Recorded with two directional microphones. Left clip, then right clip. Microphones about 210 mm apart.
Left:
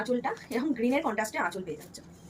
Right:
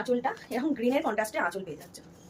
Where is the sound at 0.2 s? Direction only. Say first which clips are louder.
Right 1 dB; 25° right (ahead or behind).